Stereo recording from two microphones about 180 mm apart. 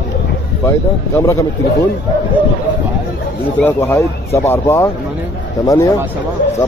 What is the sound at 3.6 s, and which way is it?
Speech, 10° left (ahead or behind).